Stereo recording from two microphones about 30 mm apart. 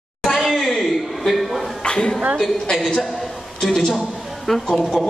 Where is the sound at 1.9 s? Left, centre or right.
Left.